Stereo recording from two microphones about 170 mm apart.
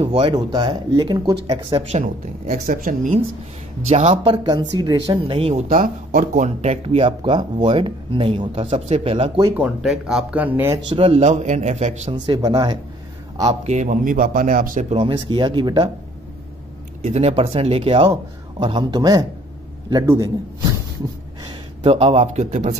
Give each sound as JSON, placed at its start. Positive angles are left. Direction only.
{"t": 0.0, "sound": "speech", "side_deg": -40}
{"t": 0.3, "sound": "speech", "side_deg": -25}
{"t": 2.0, "sound": "speech", "side_deg": -40}
{"t": 2.6, "sound": "a man's voice", "side_deg": -55}
{"t": 3.9, "sound": "speech", "side_deg": -40}
{"t": 5.7, "sound": "speech", "side_deg": -50}
{"t": 9.4, "sound": "speech", "side_deg": -10}
{"t": 10.9, "sound": "speech", "side_deg": -35}
{"t": 12.3, "sound": "speech", "side_deg": -25}
{"t": 13.5, "sound": "a man's voice", "side_deg": -45}
{"t": 15.1, "sound": "speech", "side_deg": -30}
{"t": 17.0, "sound": "speech", "side_deg": -40}
{"t": 21.5, "sound": "speech", "side_deg": -35}